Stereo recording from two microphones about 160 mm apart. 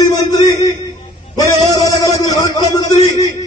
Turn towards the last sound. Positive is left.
turn(degrees=25)  # may be behind; listen again after turning